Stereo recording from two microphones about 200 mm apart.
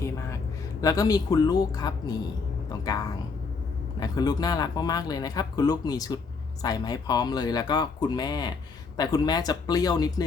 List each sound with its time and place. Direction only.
0.8 s speech: 15° left (ahead or behind)
4.0 s speech: 20° left (ahead or behind)